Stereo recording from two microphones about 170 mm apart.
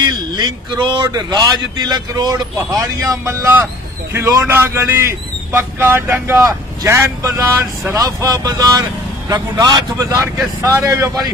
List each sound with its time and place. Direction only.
0.0 s a man's voice: 25° right (ahead or behind)